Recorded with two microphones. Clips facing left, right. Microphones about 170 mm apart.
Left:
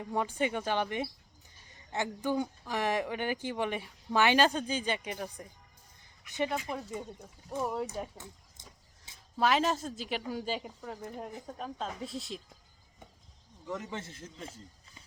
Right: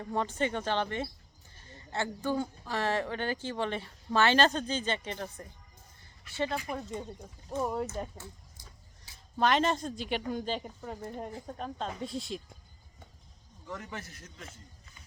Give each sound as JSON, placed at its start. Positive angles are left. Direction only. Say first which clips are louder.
{"t": 0.0, "sound": "speech", "louder": "even", "side_deg": 10}
{"t": 6.7, "sound": "speech", "louder": "right 1 dB", "side_deg": 5}
{"t": 9.1, "sound": "a sound", "louder": "left 1 dB", "side_deg": 20}
{"t": 9.4, "sound": "speech", "louder": "right 1 dB", "side_deg": 5}
{"t": 13.7, "sound": "a man's voice", "louder": "left 3 dB", "side_deg": 20}